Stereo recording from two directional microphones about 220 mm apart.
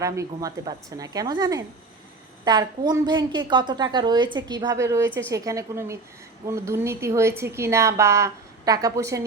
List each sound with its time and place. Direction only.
0.0 s a woman's voice: 15° right (ahead or behind)